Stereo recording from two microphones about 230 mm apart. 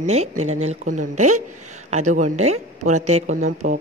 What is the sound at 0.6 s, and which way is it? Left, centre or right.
A woman's voice, right.